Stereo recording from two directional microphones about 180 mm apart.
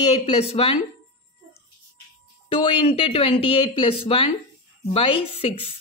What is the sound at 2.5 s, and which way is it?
Speech, 30° left (ahead or behind).